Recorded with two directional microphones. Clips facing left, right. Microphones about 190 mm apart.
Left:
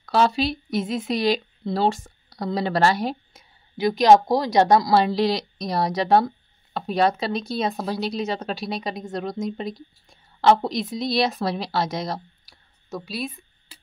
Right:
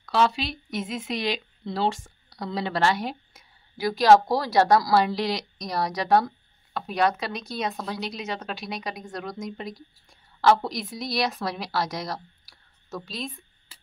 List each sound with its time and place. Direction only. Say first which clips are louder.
0.0 s speech: left 3 dB; 40° left (ahead or behind)
3.7 s speech: left 2 dB; 20° left (ahead or behind)
12.9 s a sound: left 4 dB; 10° left (ahead or behind)